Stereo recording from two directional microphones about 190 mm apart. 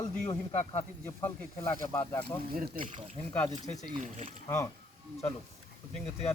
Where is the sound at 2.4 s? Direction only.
50° right (ahead or behind).